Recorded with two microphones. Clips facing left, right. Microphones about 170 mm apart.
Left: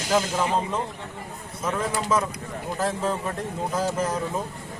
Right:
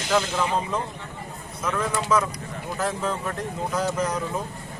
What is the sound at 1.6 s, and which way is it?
Speech, 25° left (ahead or behind).